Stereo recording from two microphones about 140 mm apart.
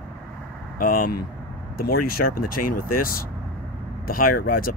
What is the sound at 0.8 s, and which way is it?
Speech, 85° left.